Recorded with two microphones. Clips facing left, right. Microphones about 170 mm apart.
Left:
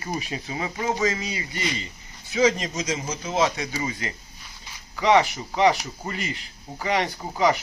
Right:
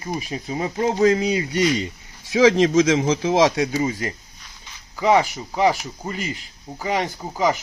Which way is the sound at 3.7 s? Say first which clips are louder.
Right 7 dB; 50° right (ahead or behind).